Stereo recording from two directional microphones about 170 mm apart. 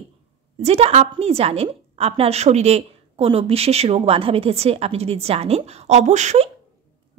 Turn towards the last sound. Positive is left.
turn(degrees=-40)  # may be behind; listen again after turning